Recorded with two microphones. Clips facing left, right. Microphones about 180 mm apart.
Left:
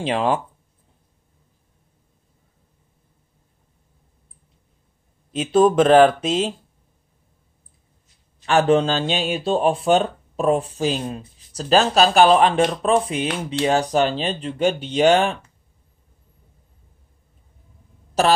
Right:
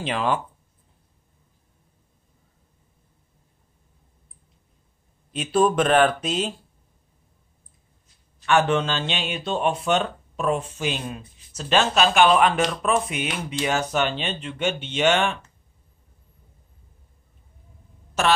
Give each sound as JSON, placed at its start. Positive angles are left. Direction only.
{"t": 0.0, "sound": "speech", "side_deg": 30}
{"t": 5.3, "sound": "speech", "side_deg": 25}
{"t": 8.5, "sound": "speech", "side_deg": 35}
{"t": 18.2, "sound": "speech", "side_deg": 35}